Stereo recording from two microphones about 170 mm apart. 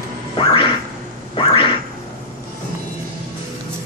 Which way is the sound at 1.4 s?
30° left (ahead or behind).